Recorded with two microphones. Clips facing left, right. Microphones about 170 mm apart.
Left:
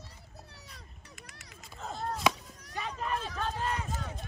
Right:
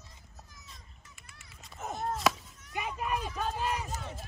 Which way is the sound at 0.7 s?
75° left (ahead or behind).